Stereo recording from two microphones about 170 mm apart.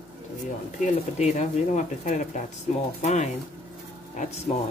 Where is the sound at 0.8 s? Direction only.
40° left (ahead or behind).